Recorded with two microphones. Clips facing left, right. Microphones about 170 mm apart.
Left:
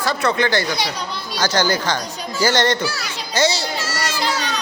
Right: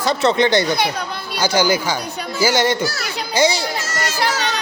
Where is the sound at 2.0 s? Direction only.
60° right (ahead or behind).